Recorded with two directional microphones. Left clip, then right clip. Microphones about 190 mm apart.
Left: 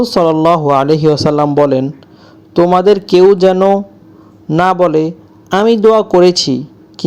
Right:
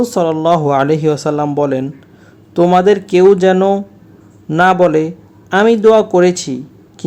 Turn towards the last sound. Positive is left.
turn(degrees=15)  # may be behind; listen again after turning